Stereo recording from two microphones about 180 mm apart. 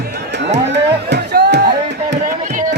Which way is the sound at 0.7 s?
70° right (ahead or behind).